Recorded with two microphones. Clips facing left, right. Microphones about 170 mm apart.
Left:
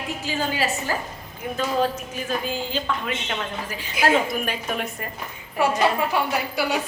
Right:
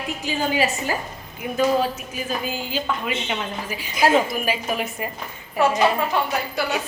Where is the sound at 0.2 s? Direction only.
15° right (ahead or behind).